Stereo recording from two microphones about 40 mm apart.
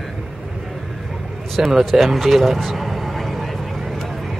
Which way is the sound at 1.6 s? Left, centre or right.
Centre.